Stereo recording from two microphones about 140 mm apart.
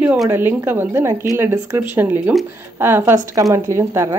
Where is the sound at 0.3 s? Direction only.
15° right (ahead or behind).